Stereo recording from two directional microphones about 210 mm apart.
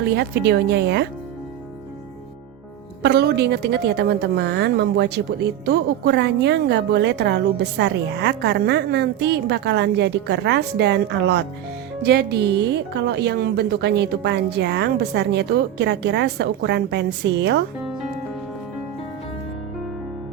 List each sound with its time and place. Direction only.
0.0 s a woman's voice: 50° right (ahead or behind)
3.0 s a woman's voice: 55° right (ahead or behind)